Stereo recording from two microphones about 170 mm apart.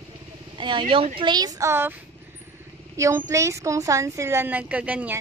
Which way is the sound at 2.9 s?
20° right (ahead or behind).